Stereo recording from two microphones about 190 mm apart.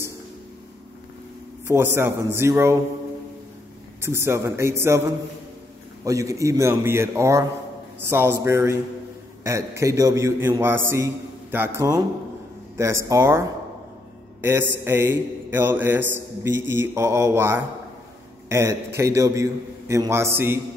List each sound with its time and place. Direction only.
1.7 s a man's voice: 10° right (ahead or behind)
4.0 s a man's voice: 15° right (ahead or behind)